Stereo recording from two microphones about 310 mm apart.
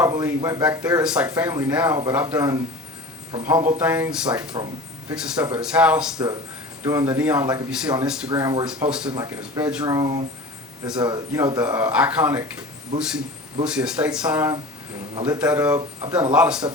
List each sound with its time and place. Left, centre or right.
0.0 s speech: centre
4.5 s speech: centre
5.6 s speech: centre
8.3 s speech: centre
15.4 s speech: centre